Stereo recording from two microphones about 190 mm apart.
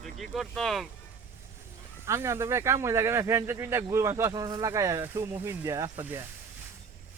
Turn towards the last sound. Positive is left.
turn(degrees=-15)  # may be behind; listen again after turning